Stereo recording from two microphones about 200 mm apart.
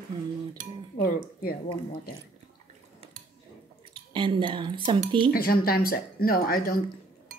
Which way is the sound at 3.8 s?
25° right (ahead or behind).